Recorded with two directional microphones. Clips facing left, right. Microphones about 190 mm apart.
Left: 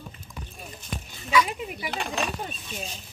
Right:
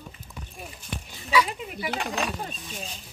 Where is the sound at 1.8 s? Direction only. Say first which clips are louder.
Right 2 dB; 10° right (ahead or behind).